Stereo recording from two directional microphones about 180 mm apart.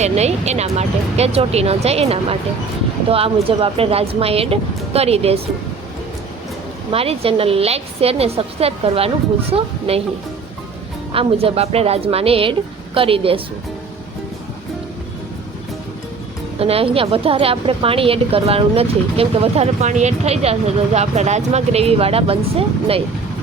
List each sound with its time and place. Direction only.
0.0 s a woman's voice: 40° right (ahead or behind)
6.9 s a woman's voice: 35° right (ahead or behind)
11.1 s a woman's voice: 30° right (ahead or behind)
16.6 s a woman's voice: 35° right (ahead or behind)